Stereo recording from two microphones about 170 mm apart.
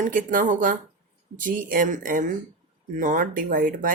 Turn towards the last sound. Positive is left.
turn(degrees=-55)  # may be behind; listen again after turning